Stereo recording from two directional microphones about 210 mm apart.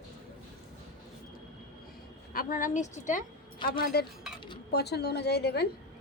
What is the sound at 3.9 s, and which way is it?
A woman's voice, 45° left (ahead or behind).